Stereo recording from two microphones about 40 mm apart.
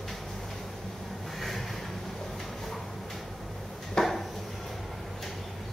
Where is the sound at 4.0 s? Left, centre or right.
Centre.